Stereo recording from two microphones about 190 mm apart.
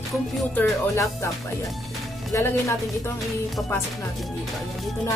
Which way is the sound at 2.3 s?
15° left (ahead or behind).